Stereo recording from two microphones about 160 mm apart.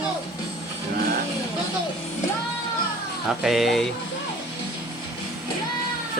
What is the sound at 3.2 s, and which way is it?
Speech, centre (ahead or behind).